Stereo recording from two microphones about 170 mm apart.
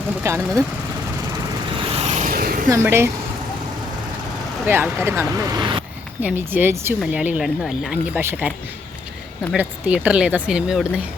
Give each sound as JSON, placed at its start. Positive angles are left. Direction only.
{"t": 0.2, "sound": "speech", "side_deg": -15}
{"t": 2.0, "sound": "vehicle", "side_deg": -40}
{"t": 2.6, "sound": "speech", "side_deg": -15}
{"t": 4.6, "sound": "speech", "side_deg": -15}
{"t": 6.2, "sound": "speech", "side_deg": -10}
{"t": 8.1, "sound": "speech", "side_deg": -15}